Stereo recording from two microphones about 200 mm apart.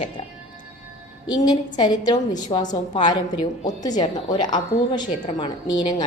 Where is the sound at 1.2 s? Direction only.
20° left (ahead or behind).